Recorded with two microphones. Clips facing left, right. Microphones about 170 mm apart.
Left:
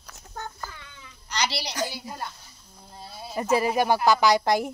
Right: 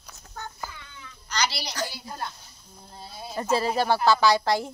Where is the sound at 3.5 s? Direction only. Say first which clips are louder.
Left 2 dB; 15° left (ahead or behind).